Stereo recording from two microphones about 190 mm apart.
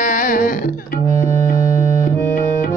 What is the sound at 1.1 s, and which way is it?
Music, 15° left (ahead or behind).